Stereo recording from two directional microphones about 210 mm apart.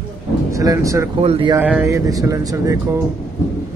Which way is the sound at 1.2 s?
25° right (ahead or behind).